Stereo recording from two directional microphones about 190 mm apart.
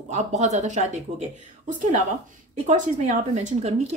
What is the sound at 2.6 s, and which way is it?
Speech, 40° right (ahead or behind).